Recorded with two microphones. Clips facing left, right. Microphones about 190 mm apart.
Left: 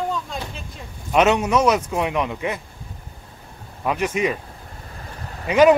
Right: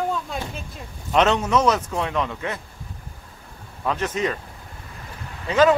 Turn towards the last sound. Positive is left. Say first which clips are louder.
# left 3 dB
turn(degrees=15)  # may be behind; listen again after turning